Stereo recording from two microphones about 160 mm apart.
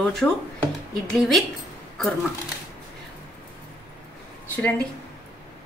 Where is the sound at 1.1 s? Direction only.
Centre (ahead or behind).